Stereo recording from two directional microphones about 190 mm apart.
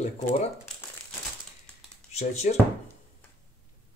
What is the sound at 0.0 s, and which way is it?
Speech, 35° left (ahead or behind).